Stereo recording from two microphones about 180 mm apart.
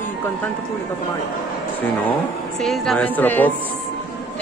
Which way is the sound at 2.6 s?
Centre (ahead or behind).